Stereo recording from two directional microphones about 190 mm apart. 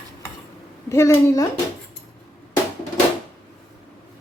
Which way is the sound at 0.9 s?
15° left (ahead or behind).